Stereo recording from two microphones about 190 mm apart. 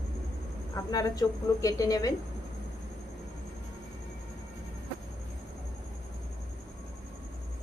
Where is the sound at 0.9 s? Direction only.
20° left (ahead or behind).